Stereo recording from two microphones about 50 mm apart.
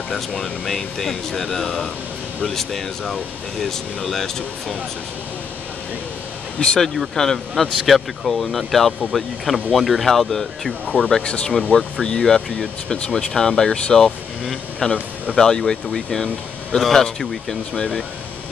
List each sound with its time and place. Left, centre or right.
0.1 s speech: centre
6.6 s speech: centre
7.7 s speech: centre
10.9 s speech: centre